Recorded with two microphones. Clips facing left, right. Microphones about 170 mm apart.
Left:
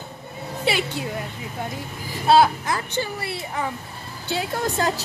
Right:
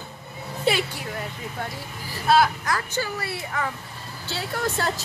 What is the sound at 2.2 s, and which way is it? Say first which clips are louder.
A woman's voice: left 3 dB; 25° left (ahead or behind).